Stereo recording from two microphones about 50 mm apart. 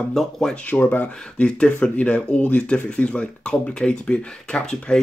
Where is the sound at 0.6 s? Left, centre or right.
Left.